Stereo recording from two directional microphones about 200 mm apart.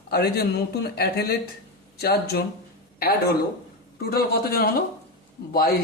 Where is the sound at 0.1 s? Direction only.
50° left (ahead or behind).